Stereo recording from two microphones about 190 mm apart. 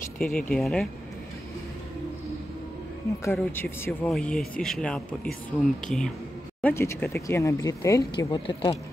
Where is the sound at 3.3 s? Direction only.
10° left (ahead or behind).